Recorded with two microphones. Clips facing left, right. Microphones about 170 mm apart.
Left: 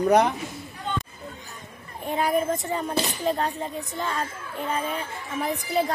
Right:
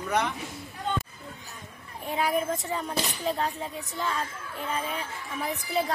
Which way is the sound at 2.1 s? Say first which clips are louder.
Left 3 dB; centre (ahead or behind).